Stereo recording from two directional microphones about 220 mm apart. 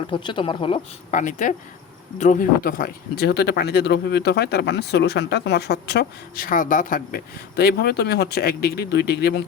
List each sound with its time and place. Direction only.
0.1 s speech: 20° left (ahead or behind)
1.2 s speech: 35° left (ahead or behind)